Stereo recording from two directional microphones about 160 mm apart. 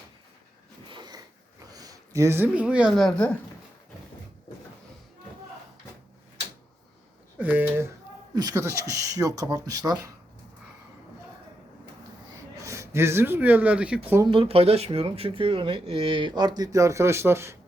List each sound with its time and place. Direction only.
0.9 s sniff: 30° right (ahead or behind)
1.7 s speech: 20° right (ahead or behind); by 3.3 s 5° left (ahead or behind)
7.3 s speech: 10° right (ahead or behind)
12.6 s speech: 20° right (ahead or behind)
14.3 s speech: 35° right (ahead or behind); by 17.6 s 15° right (ahead or behind)